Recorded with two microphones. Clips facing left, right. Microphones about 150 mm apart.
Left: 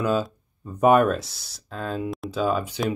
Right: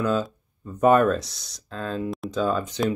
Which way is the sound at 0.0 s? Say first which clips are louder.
Even; 10° left (ahead or behind).